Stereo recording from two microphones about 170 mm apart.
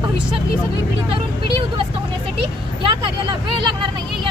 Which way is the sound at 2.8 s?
30° right (ahead or behind).